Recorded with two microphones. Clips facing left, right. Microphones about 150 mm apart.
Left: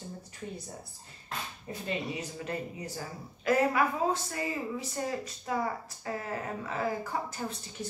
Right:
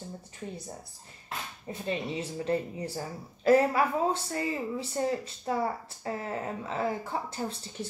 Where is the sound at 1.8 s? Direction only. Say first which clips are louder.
Right 3 dB; 30° right (ahead or behind).